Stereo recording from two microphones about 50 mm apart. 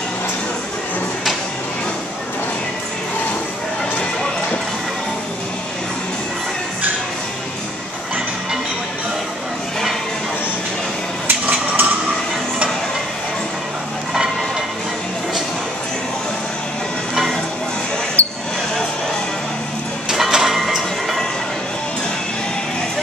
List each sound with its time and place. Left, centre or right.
11.2 s a sound: right
17.1 s music: centre
18.2 s basketball bounce: left
20.1 s music: centre